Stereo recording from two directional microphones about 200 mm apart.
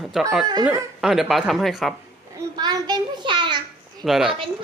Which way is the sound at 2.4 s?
20° right (ahead or behind).